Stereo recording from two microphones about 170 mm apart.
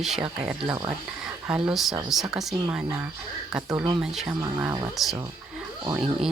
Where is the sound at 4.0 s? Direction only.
5° right (ahead or behind).